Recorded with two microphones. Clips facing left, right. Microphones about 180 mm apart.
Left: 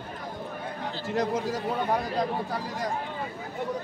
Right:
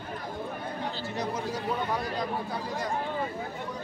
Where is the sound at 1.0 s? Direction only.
90° left.